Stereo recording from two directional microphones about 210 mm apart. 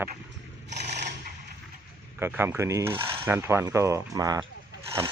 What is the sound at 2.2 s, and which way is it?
Coin, 10° right (ahead or behind).